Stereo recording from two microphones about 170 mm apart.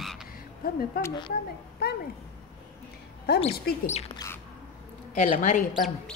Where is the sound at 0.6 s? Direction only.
60° left (ahead or behind).